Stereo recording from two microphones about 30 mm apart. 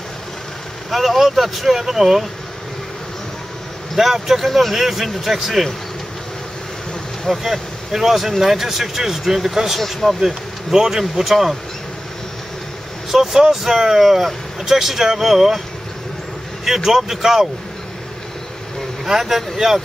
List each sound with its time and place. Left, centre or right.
0.8 s speech: centre
3.9 s speech: centre
7.3 s speech: centre
7.9 s speech: centre
9.8 s speech: centre
10.2 s speech: centre
11.2 s speech: centre
13.1 s speech: centre
16.6 s speech: centre
19.0 s speech: centre